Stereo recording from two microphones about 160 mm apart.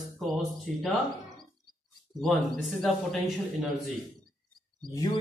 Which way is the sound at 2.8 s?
Centre (ahead or behind).